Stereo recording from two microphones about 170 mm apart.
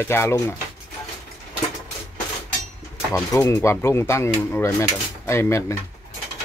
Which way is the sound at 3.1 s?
15° left (ahead or behind).